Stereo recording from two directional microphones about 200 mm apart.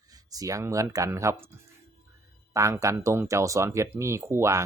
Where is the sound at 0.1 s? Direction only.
20° right (ahead or behind).